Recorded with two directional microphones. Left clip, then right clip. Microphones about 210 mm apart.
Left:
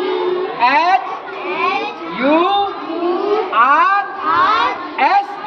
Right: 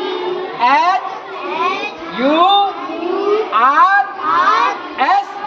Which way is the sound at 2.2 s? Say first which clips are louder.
Right 2 dB; 5° right (ahead or behind).